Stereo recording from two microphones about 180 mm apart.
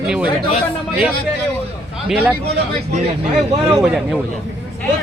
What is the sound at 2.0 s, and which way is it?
Speech, 10° right (ahead or behind).